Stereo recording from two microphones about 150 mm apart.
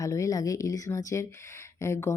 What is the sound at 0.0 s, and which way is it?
A woman's voice, 25° left (ahead or behind).